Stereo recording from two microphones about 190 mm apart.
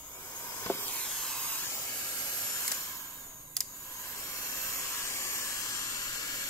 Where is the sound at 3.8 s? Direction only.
15° left (ahead or behind).